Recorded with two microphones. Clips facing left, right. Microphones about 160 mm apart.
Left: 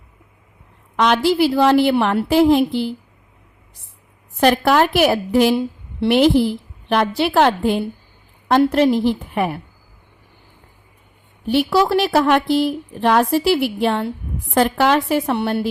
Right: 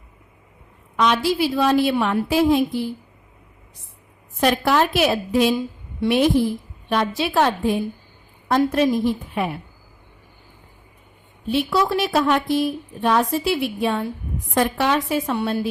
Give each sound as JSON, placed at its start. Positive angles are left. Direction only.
{"t": 0.9, "sound": "a woman's voice", "side_deg": 65}
{"t": 4.4, "sound": "a woman's voice", "side_deg": 65}
{"t": 11.4, "sound": "a woman's voice", "side_deg": 70}